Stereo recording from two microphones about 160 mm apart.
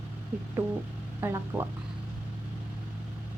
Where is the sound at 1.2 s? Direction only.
15° right (ahead or behind).